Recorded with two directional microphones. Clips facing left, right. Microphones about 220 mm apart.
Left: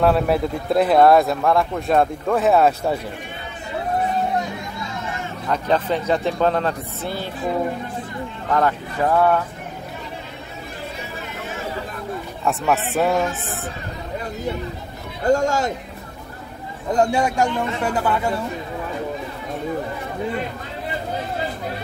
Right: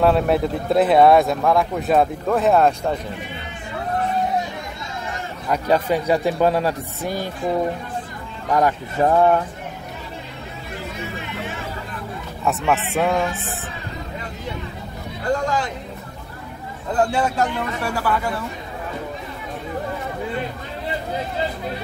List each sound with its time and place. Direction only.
0.0 s speech: centre (ahead or behind)
5.5 s speech: 10° right (ahead or behind)
8.5 s speech: 15° right (ahead or behind)
12.4 s speech: centre (ahead or behind)
15.3 s a man's voice: 45° left (ahead or behind)
16.9 s speech: 15° left (ahead or behind)